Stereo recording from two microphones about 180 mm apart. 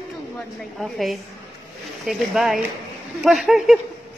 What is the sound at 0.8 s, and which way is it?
A woman's voice, centre (ahead or behind).